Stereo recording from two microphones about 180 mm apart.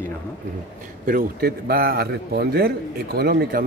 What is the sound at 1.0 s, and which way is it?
A man's voice, 55° right (ahead or behind).